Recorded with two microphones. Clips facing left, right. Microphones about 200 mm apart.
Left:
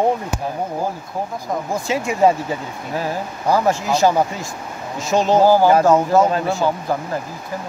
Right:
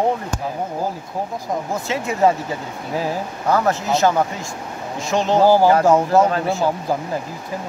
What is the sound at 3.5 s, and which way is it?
Speech, 10° left (ahead or behind).